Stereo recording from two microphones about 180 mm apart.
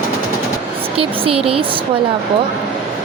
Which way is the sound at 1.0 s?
30° right (ahead or behind).